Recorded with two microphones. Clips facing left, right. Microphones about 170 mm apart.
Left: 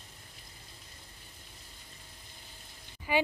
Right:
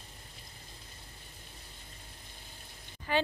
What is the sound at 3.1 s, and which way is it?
Speech, 10° left (ahead or behind).